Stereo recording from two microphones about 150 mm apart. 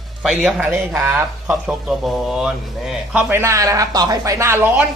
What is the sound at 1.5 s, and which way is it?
A man's voice, centre (ahead or behind).